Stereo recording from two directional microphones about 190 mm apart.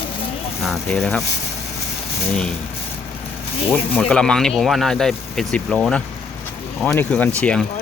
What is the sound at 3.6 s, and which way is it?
Speech, 10° left (ahead or behind).